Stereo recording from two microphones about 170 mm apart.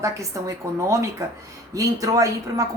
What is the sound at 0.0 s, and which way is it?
A woman's voice, 20° right (ahead or behind).